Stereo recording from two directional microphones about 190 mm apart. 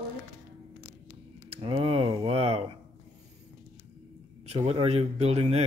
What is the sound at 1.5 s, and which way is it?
Speech, 30° right (ahead or behind).